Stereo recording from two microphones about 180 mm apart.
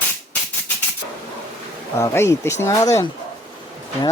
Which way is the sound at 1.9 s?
15° left (ahead or behind).